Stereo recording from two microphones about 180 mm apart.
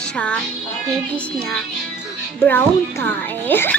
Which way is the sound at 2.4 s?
10° left (ahead or behind).